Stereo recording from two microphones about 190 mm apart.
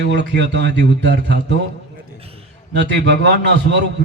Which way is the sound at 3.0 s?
65° right (ahead or behind).